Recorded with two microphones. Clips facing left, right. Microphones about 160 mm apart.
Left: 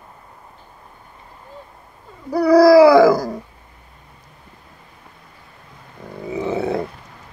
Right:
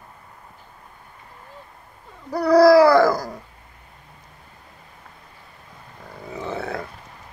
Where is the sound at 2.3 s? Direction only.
5° left (ahead or behind).